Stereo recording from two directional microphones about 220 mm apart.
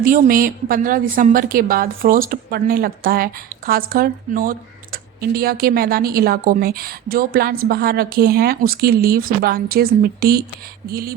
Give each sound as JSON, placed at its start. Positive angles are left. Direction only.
{"t": 0.0, "sound": "a woman's voice", "side_deg": -40}